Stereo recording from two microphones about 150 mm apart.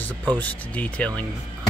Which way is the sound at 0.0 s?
10° left (ahead or behind).